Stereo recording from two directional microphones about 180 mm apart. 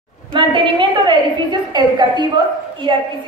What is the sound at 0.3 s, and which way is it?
A woman's voice, 25° right (ahead or behind).